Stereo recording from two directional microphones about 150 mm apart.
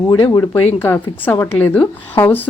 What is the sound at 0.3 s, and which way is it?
Speech, 15° left (ahead or behind).